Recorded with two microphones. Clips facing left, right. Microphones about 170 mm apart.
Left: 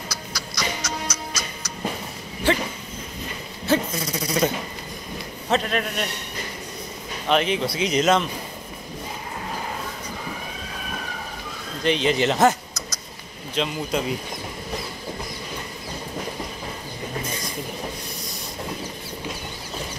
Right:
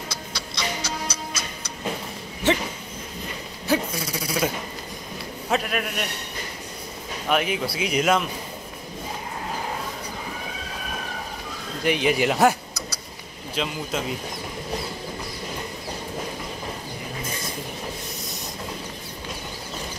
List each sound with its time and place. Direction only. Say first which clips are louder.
0.1 s music: even; 25° right (ahead or behind)
3.6 s a sound: left 2 dB; 10° right (ahead or behind)
5.5 s speech: left 2 dB; 10° right (ahead or behind)
7.2 s speech: left 2 dB; 10° right (ahead or behind)
11.8 s speech: left 1 dB; 10° right (ahead or behind)
13.6 s speech: left 3 dB; centre (ahead or behind)